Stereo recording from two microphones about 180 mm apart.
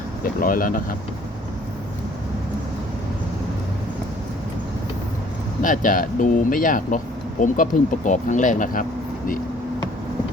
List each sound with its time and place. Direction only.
0.2 s speech: 50° left (ahead or behind)
5.6 s speech: 50° left (ahead or behind)